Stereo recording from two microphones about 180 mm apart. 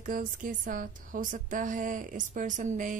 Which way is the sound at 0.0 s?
50° right (ahead or behind).